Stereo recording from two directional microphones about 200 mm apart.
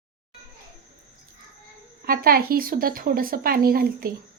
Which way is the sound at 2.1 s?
50° right (ahead or behind).